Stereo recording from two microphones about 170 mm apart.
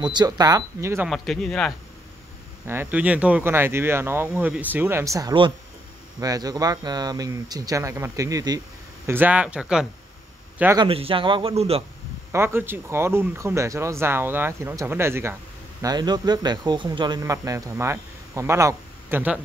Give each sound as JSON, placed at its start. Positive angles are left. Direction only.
{"t": 0.0, "sound": "speech", "side_deg": -25}
{"t": 1.0, "sound": "speech", "side_deg": 0}
{"t": 2.6, "sound": "speech", "side_deg": -10}
{"t": 10.8, "sound": "speech", "side_deg": -35}
{"t": 12.3, "sound": "speech", "side_deg": -15}